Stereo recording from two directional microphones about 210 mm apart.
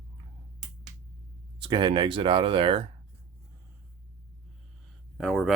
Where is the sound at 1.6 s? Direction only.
25° right (ahead or behind).